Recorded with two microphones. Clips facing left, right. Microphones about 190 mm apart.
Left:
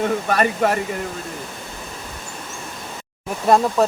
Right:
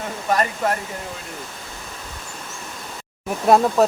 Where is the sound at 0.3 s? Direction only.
70° left (ahead or behind).